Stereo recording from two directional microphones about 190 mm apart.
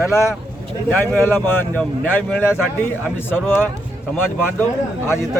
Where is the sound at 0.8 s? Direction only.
10° left (ahead or behind).